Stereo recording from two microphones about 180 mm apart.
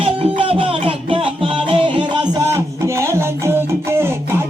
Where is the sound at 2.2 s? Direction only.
15° right (ahead or behind).